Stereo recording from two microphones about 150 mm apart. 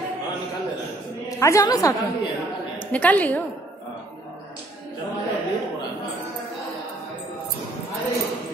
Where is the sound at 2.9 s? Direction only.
10° left (ahead or behind).